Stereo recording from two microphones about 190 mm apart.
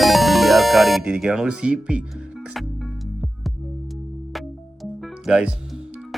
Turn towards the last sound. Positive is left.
turn(degrees=-5)  # may be behind; listen again after turning